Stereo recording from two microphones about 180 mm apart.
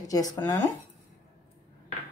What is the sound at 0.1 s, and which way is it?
Speech, 20° left (ahead or behind).